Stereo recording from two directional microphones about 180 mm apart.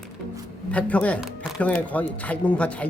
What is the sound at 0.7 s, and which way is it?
Speech, 5° left (ahead or behind).